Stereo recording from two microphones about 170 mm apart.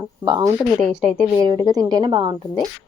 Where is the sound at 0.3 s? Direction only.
25° right (ahead or behind).